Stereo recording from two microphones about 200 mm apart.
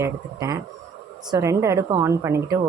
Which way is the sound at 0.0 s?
15° right (ahead or behind).